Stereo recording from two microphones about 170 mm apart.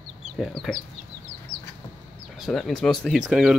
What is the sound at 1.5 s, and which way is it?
Chicken, 25° right (ahead or behind).